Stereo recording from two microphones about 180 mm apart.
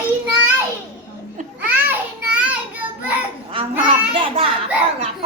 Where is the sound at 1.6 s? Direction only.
10° right (ahead or behind).